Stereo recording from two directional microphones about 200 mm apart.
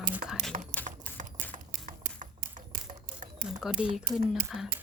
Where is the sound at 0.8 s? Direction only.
35° right (ahead or behind).